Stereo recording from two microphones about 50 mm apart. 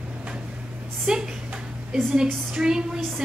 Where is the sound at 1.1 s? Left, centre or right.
Centre.